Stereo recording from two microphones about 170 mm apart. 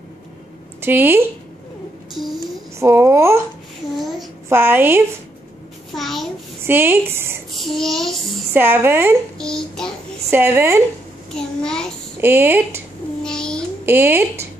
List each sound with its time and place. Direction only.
0.7 s speech: 10° right (ahead or behind)
2.3 s babbling: 15° right (ahead or behind)
4.5 s speech: 10° right (ahead or behind)
5.9 s a sound: centre (ahead or behind)
6.6 s speech: 15° right (ahead or behind)
7.5 s child singing: centre (ahead or behind)
8.5 s speech: 15° right (ahead or behind)
9.4 s child singing: 5° left (ahead or behind)
10.3 s speech: 15° right (ahead or behind)
11.6 s child singing: 5° left (ahead or behind)
12.2 s speech: 15° right (ahead or behind)
13.2 s a sound: 5° left (ahead or behind)
13.8 s speech: 15° right (ahead or behind)